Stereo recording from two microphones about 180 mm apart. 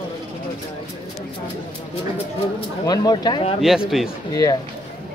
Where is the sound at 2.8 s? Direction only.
20° left (ahead or behind).